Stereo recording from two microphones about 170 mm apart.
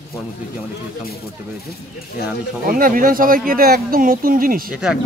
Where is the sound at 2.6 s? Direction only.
55° right (ahead or behind).